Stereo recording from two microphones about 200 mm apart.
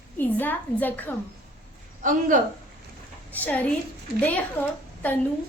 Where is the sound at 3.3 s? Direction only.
10° left (ahead or behind).